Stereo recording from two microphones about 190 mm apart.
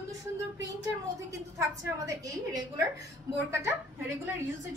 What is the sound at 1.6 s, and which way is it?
A woman's voice, 15° right (ahead or behind).